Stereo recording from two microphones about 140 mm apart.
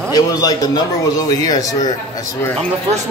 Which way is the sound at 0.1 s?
25° left (ahead or behind).